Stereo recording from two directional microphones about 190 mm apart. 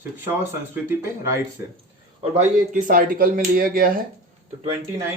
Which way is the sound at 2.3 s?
40° right (ahead or behind).